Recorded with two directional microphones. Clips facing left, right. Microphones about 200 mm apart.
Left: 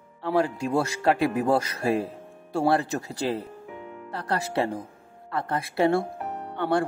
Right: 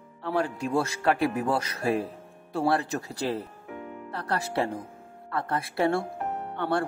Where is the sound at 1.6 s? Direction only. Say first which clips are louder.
Left 2 dB; 30° left (ahead or behind).